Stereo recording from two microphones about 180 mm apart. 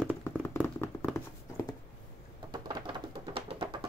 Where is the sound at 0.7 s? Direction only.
10° left (ahead or behind).